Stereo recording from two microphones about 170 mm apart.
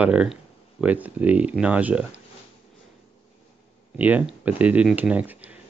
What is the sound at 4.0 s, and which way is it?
Speech, 10° right (ahead or behind).